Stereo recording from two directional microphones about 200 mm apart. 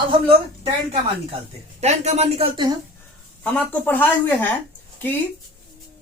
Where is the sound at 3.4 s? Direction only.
10° left (ahead or behind).